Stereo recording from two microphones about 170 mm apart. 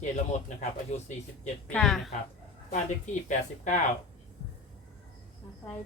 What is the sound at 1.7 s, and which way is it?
Speech, 5° left (ahead or behind).